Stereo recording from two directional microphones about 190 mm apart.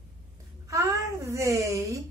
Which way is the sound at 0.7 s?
15° right (ahead or behind).